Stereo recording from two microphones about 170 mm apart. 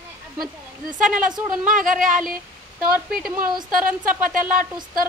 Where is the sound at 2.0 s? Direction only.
50° right (ahead or behind).